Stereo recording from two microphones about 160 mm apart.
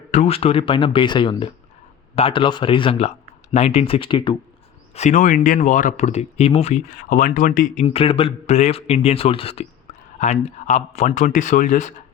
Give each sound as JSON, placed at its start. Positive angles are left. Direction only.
{"t": 0.1, "sound": "speech", "side_deg": 40}
{"t": 4.9, "sound": "speech", "side_deg": 50}
{"t": 7.9, "sound": "speech", "side_deg": 35}
{"t": 10.2, "sound": "speech", "side_deg": 50}